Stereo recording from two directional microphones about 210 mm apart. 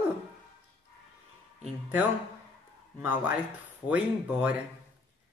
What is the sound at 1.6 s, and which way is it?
Speech, 10° right (ahead or behind).